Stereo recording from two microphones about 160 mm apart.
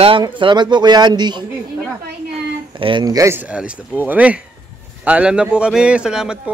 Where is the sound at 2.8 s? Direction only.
30° right (ahead or behind).